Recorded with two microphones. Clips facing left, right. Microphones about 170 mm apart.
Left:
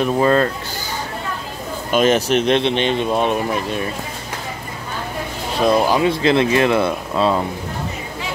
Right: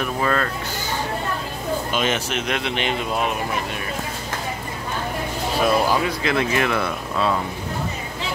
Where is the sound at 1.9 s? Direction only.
40° left (ahead or behind).